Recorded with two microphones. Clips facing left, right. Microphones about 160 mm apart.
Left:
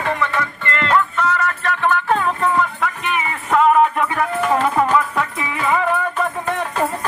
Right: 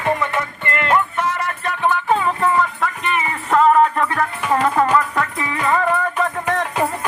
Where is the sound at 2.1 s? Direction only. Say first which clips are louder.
Right 1 dB; 5° right (ahead or behind).